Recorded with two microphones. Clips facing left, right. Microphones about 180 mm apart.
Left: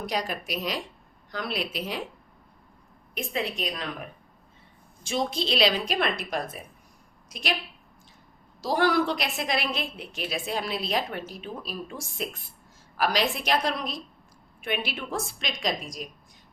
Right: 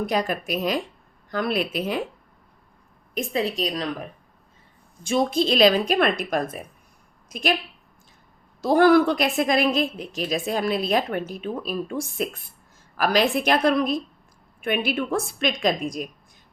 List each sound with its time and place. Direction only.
0.0 s a woman's voice: 50° right (ahead or behind)
3.2 s a woman's voice: 40° right (ahead or behind)
5.0 s a woman's voice: 50° right (ahead or behind)
8.6 s a woman's voice: 55° right (ahead or behind)